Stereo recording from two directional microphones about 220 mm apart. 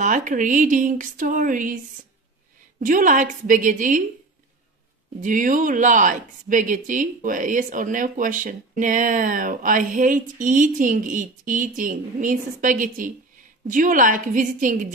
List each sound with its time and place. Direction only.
0.0 s speech: 35° right (ahead or behind)
2.8 s speech: 35° right (ahead or behind)
5.2 s speech: 35° right (ahead or behind)